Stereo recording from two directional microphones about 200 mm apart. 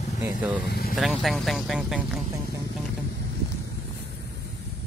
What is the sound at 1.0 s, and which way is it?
Speech, centre (ahead or behind).